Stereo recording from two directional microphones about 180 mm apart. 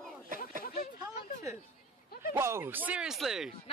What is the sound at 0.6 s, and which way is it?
Speech, 55° left (ahead or behind).